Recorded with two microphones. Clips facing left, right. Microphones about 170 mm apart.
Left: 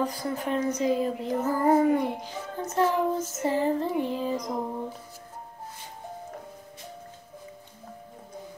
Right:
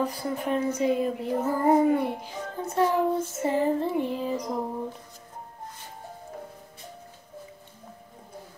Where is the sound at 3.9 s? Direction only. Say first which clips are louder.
Even; centre (ahead or behind).